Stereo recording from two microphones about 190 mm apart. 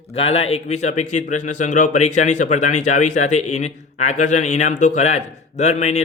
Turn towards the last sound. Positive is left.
turn(degrees=35)  # may be behind; listen again after turning